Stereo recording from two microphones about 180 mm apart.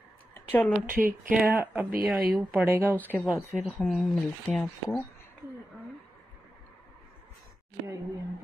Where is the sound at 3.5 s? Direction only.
5° right (ahead or behind).